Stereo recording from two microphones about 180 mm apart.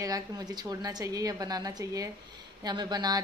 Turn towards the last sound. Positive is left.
turn(degrees=-25)  # may be behind; listen again after turning